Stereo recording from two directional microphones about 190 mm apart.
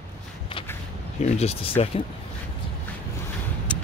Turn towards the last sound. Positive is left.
turn(degrees=5)  # may be behind; listen again after turning